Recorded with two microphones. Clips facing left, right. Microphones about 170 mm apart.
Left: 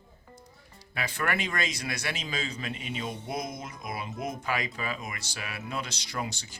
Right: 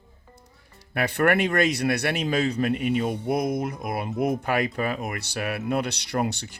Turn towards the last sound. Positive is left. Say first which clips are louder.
# right 9 dB
turn(degrees=-65)  # may be behind; listen again after turning